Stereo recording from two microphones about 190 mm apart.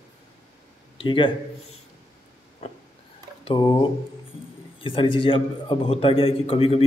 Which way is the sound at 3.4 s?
20° left (ahead or behind).